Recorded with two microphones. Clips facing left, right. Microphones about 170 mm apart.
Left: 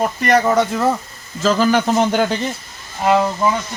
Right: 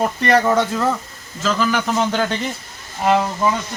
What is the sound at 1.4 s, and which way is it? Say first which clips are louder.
Speech: left 5 dB; 35° left (ahead or behind).